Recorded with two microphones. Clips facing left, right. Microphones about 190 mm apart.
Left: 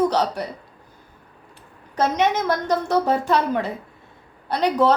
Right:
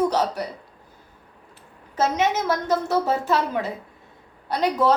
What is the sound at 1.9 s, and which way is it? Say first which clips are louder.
A woman's voice: left 2 dB; 5° right (ahead or behind).